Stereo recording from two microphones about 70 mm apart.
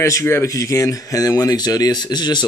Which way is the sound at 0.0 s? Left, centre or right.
Left.